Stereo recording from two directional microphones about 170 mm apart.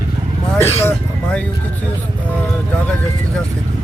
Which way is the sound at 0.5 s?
15° left (ahead or behind).